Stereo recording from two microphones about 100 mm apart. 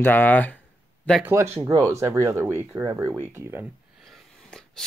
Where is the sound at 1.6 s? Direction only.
35° right (ahead or behind).